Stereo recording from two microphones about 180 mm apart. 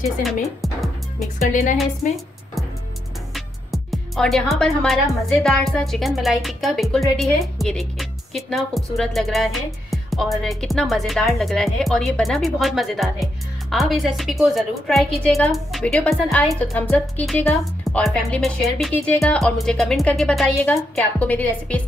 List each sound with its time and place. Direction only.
0.2 s music: centre (ahead or behind)
1.5 s a woman's voice: 45° left (ahead or behind)
3.3 s speech: centre (ahead or behind)